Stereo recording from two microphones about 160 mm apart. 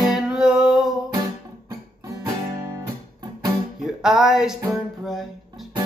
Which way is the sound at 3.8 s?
5° right (ahead or behind).